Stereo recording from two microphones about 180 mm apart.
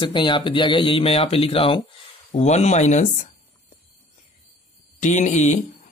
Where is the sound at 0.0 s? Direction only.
25° left (ahead or behind).